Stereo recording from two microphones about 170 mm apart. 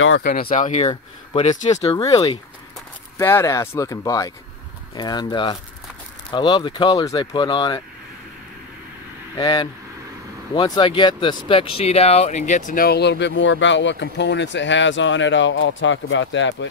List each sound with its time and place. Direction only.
0.2 s speech: 60° left (ahead or behind)
0.6 s speech: 45° left (ahead or behind)
2.0 s speech: 20° left (ahead or behind)
9.3 s speech: 25° left (ahead or behind); by 16.6 s 90° left